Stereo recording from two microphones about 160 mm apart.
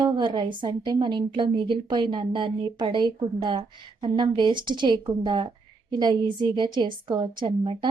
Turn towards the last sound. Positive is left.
turn(degrees=-30)  # may be behind; listen again after turning